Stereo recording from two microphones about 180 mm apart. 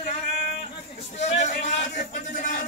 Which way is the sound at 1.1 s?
40° left (ahead or behind).